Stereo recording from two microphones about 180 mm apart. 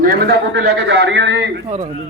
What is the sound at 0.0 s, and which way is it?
A man's voice, 60° right (ahead or behind).